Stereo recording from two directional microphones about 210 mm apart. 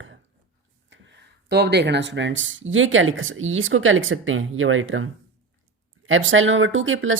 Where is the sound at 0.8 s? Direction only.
60° right (ahead or behind).